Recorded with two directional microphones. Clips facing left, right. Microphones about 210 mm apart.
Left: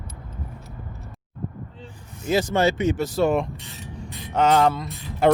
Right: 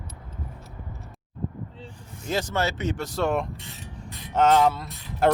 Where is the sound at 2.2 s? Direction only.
5° left (ahead or behind).